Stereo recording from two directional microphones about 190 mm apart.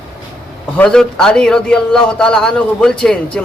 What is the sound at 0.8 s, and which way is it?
A man's voice, 5° left (ahead or behind).